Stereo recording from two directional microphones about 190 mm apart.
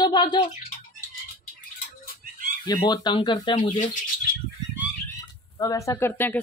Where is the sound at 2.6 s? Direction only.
20° left (ahead or behind).